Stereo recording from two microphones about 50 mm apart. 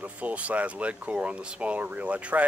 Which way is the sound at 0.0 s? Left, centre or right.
Right.